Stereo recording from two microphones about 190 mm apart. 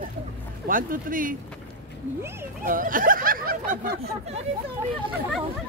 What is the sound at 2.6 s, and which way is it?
Speech, 45° right (ahead or behind).